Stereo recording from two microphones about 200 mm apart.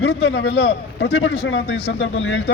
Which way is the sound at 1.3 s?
60° left (ahead or behind).